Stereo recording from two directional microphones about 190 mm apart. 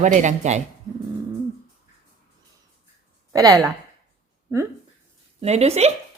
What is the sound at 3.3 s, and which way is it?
Speech, 20° right (ahead or behind).